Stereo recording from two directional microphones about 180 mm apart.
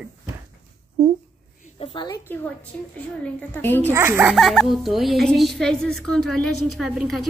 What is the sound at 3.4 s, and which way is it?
Speech, 10° left (ahead or behind).